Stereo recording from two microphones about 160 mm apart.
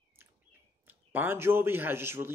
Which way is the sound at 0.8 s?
10° right (ahead or behind).